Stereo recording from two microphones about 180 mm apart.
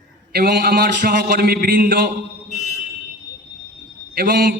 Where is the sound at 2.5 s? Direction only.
40° left (ahead or behind).